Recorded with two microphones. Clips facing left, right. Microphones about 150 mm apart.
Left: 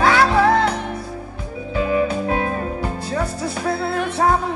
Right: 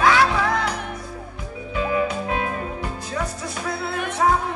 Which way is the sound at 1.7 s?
35° left (ahead or behind).